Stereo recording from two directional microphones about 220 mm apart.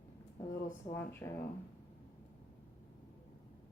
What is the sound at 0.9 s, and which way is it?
Speech, 10° left (ahead or behind).